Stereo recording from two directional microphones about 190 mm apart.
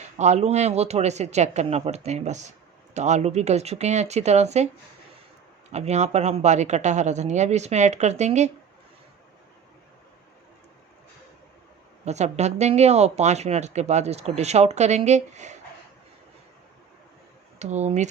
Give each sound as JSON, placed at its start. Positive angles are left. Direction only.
{"t": 0.2, "sound": "speech", "side_deg": -35}
{"t": 5.7, "sound": "speech", "side_deg": -35}
{"t": 12.0, "sound": "speech", "side_deg": -35}
{"t": 17.6, "sound": "speech", "side_deg": -35}